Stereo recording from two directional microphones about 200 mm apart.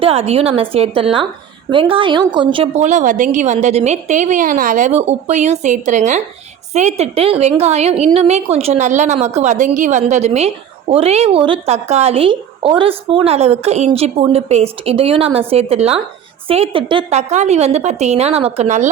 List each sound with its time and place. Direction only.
0.0 s a woman's voice: 30° right (ahead or behind)